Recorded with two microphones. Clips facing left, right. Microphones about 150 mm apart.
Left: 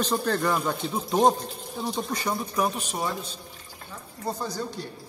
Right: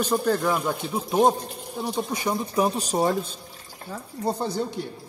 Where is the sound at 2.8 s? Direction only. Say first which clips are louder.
Right 7 dB; 40° right (ahead or behind).